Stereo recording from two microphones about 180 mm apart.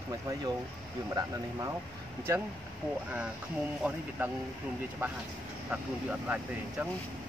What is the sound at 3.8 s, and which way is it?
Speech, 5° right (ahead or behind).